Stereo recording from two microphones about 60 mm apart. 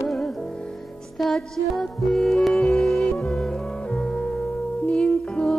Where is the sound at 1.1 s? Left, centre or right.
Centre.